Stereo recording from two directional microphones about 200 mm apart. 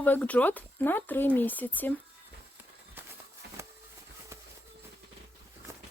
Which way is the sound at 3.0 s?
10° right (ahead or behind).